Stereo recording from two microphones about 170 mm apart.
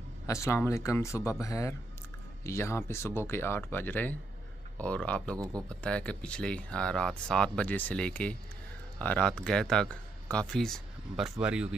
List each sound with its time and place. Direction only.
0.3 s speech: 15° left (ahead or behind); by 11.7 s 5° right (ahead or behind)